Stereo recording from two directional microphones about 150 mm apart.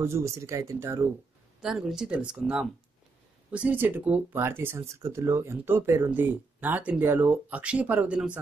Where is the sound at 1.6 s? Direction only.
5° right (ahead or behind).